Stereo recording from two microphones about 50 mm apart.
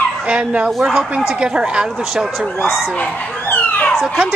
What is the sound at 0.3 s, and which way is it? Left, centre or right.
Speech, right.